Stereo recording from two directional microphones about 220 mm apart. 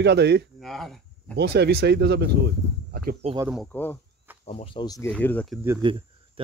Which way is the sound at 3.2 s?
25° right (ahead or behind).